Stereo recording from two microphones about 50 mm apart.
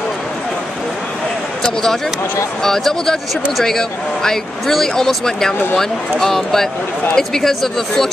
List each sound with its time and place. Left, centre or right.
1.6 s speech: centre